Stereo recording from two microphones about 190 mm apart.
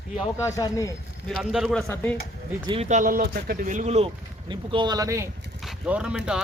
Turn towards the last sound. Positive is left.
turn(degrees=-5)  # may be behind; listen again after turning